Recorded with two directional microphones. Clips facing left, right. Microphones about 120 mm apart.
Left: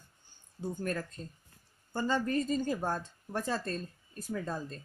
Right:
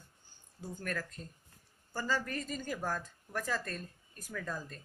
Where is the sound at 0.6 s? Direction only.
25° left (ahead or behind).